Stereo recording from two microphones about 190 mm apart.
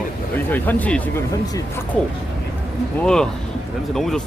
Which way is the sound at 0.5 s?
10° left (ahead or behind).